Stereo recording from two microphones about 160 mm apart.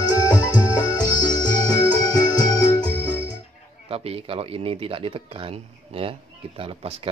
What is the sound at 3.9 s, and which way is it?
Speech, 40° right (ahead or behind).